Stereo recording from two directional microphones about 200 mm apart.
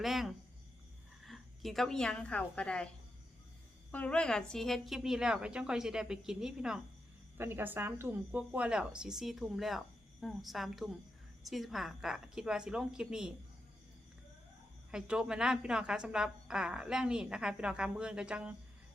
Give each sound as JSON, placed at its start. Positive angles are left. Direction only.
{"t": 0.0, "sound": "a woman's voice", "side_deg": 0}
{"t": 3.9, "sound": "a woman's voice", "side_deg": 5}
{"t": 14.8, "sound": "a woman's voice", "side_deg": -5}